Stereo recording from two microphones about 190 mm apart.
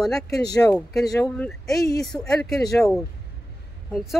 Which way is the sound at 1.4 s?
Centre (ahead or behind).